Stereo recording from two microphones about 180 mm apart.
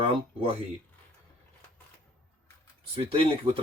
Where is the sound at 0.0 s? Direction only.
30° right (ahead or behind).